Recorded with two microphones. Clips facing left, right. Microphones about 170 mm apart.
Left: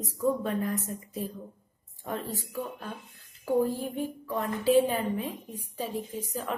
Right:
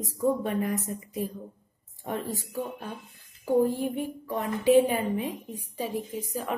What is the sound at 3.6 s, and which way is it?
Speech, 10° right (ahead or behind).